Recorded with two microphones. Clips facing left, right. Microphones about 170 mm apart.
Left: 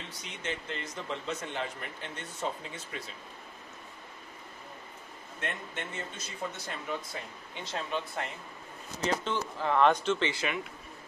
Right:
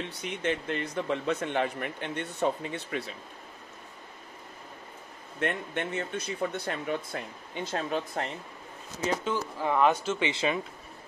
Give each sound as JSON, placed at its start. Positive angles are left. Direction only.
{"t": 0.2, "sound": "speech", "side_deg": -55}
{"t": 5.4, "sound": "speech", "side_deg": -60}
{"t": 7.6, "sound": "speech", "side_deg": -45}
{"t": 9.2, "sound": "speech", "side_deg": -10}
{"t": 10.3, "sound": "speech", "side_deg": -30}